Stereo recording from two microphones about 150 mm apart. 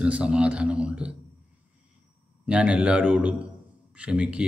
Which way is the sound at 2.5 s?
5° right (ahead or behind).